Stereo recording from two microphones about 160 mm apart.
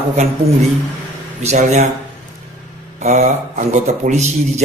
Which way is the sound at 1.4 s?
45° right (ahead or behind).